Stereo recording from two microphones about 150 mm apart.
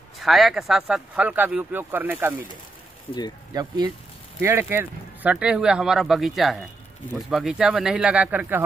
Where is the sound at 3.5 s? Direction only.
30° right (ahead or behind).